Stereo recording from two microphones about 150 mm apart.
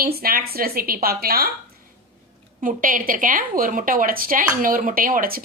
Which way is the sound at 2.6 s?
65° right (ahead or behind).